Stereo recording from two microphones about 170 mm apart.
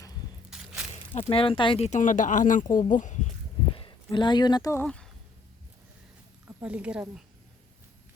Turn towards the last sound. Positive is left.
turn(degrees=-5)  # may be behind; listen again after turning